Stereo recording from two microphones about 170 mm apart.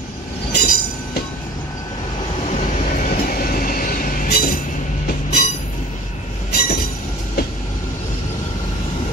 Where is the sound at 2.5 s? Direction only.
50° left (ahead or behind).